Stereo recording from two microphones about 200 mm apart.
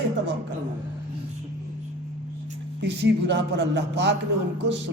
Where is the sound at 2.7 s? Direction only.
60° right (ahead or behind).